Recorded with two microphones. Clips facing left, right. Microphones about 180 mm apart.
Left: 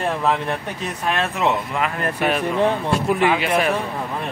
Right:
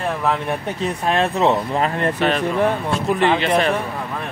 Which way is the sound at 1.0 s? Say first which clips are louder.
Right 3 dB; 30° right (ahead or behind).